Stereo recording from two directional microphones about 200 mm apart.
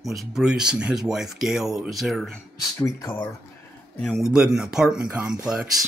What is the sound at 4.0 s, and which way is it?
Speech, centre (ahead or behind).